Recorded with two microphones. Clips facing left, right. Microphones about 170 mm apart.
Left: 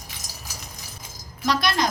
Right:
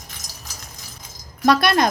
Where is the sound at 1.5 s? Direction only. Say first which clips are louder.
Right 6 dB; 55° right (ahead or behind).